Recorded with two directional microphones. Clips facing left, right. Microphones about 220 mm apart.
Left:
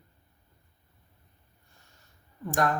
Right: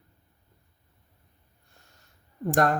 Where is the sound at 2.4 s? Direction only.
40° right (ahead or behind).